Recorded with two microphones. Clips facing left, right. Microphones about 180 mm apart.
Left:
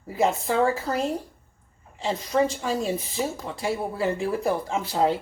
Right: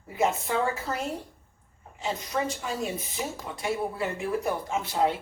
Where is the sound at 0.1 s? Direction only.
35° left (ahead or behind).